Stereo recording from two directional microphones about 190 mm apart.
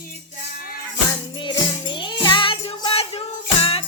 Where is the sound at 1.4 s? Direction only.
25° left (ahead or behind).